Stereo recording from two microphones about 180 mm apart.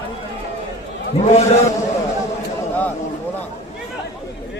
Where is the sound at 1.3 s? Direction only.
40° left (ahead or behind).